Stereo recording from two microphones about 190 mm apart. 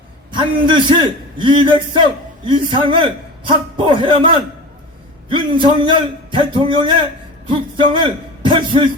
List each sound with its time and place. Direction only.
0.3 s a man's voice: 25° right (ahead or behind)